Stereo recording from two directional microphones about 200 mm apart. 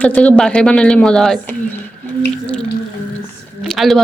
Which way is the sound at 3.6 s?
Centre (ahead or behind).